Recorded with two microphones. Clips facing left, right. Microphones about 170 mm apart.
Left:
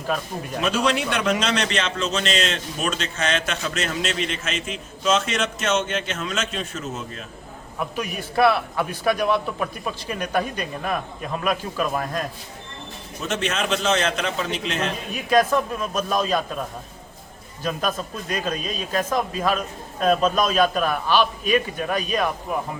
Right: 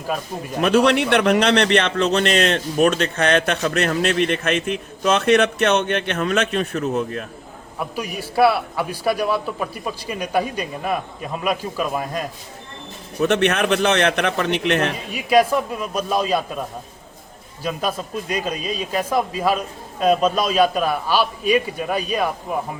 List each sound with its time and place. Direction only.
0.6 s speech: 65° right (ahead or behind)
7.9 s a man's voice: 5° right (ahead or behind)
13.1 s speech: 65° right (ahead or behind)
15.1 s a man's voice: 10° right (ahead or behind)
17.6 s a man's voice: 5° right (ahead or behind)